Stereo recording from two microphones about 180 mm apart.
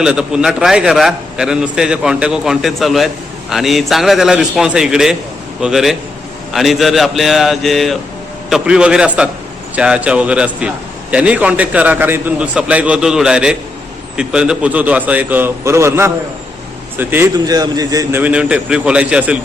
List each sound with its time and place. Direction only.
0.0 s a man's voice: 5° right (ahead or behind); by 18.2 s 20° right (ahead or behind)
18.2 s a man's voice: 5° right (ahead or behind)